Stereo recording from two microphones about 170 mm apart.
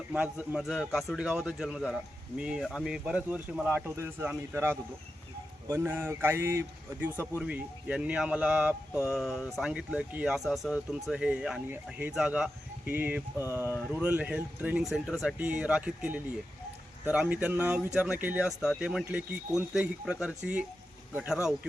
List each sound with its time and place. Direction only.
0.1 s a man's voice: 5° right (ahead or behind)